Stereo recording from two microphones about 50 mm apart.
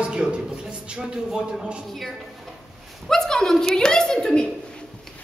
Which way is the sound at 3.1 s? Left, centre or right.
Centre.